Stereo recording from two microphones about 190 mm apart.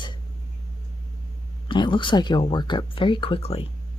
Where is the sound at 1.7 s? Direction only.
25° left (ahead or behind).